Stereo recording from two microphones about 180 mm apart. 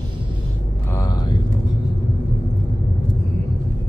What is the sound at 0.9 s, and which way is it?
Vehicle, 20° left (ahead or behind).